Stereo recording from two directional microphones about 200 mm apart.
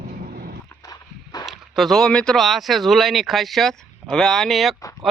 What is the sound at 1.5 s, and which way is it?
Speech, centre (ahead or behind).